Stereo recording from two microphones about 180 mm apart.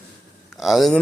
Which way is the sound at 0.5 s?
Centre (ahead or behind).